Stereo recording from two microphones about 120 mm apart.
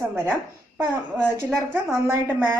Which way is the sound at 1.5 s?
20° right (ahead or behind).